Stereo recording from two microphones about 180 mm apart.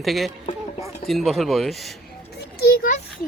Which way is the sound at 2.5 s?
55° left (ahead or behind).